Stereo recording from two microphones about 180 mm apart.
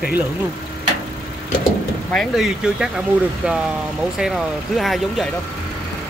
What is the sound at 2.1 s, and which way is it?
Speech, centre (ahead or behind).